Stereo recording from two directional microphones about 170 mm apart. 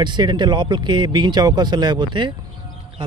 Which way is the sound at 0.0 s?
25° right (ahead or behind).